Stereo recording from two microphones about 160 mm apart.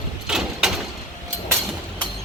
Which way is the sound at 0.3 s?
5° right (ahead or behind).